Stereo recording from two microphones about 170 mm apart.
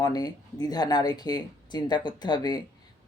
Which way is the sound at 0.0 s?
25° left (ahead or behind).